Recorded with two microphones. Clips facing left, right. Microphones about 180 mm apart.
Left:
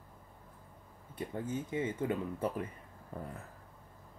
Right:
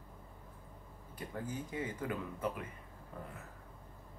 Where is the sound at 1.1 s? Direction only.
25° left (ahead or behind).